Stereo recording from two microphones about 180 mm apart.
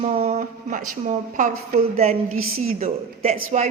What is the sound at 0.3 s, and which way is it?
A woman's voice, 40° right (ahead or behind).